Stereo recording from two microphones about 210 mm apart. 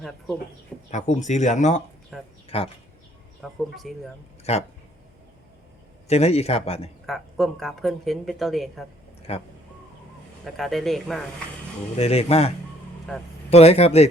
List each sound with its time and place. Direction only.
0.9 s speech: 35° left (ahead or behind)
2.1 s speech: centre (ahead or behind)
2.5 s a man's voice: 30° left (ahead or behind)
3.4 s speech: centre (ahead or behind)
4.5 s speech: 30° left (ahead or behind)
6.1 s a man's voice: 30° left (ahead or behind)
7.1 s speech: centre (ahead or behind)
9.3 s a man's voice: 30° left (ahead or behind)
10.4 s speech: centre (ahead or behind)
11.9 s a man's voice: 30° left (ahead or behind)
13.1 s speech: centre (ahead or behind)
13.5 s a man's voice: 30° left (ahead or behind)